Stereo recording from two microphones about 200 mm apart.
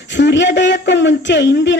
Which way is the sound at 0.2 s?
60° left (ahead or behind).